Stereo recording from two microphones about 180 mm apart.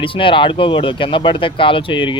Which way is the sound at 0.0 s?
30° left (ahead or behind).